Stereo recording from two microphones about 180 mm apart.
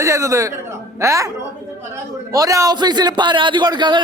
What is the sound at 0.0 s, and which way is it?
A man's voice, 15° right (ahead or behind).